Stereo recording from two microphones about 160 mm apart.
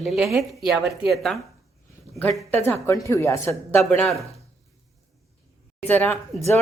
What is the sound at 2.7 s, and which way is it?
Speech, 15° left (ahead or behind).